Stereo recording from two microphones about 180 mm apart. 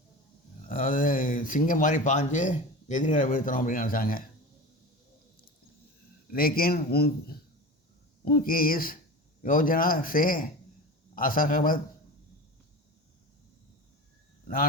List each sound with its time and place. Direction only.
0.7 s speech: 50° left (ahead or behind)
6.3 s a man's voice: 55° left (ahead or behind)
14.4 s speech: 50° left (ahead or behind)